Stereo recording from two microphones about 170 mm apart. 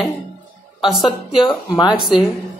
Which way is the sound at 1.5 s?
25° left (ahead or behind).